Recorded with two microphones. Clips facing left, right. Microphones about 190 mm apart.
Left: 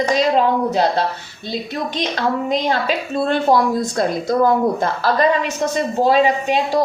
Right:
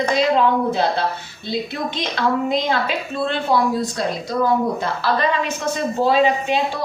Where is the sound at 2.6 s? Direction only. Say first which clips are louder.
Left 2 dB; 45° left (ahead or behind).